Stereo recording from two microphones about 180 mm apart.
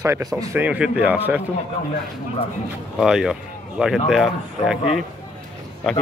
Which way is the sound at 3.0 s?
5° right (ahead or behind).